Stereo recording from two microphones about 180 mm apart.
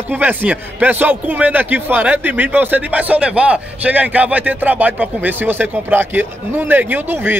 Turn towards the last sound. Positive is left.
turn(degrees=-10)  # may be behind; listen again after turning